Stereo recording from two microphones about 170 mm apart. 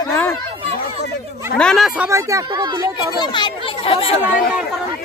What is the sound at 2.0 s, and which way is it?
Speech, 15° right (ahead or behind).